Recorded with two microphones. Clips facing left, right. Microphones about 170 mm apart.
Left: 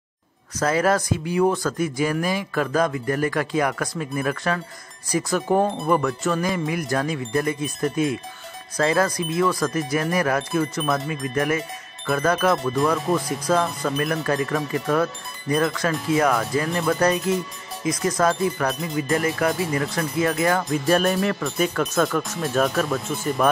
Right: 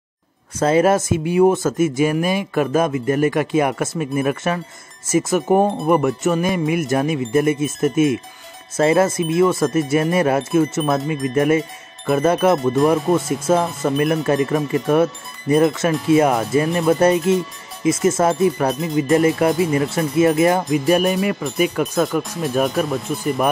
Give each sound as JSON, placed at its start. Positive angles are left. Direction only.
{"t": 0.6, "sound": "speech", "side_deg": -25}